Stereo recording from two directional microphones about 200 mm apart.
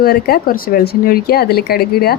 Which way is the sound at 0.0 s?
50° left (ahead or behind).